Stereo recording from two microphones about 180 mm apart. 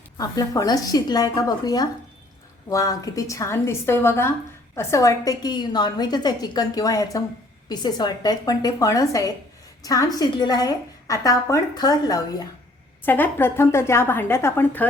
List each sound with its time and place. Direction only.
0.2 s a woman's voice: 20° left (ahead or behind)